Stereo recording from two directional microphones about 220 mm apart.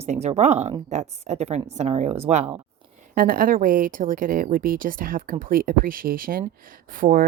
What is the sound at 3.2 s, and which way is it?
Speech, 40° right (ahead or behind).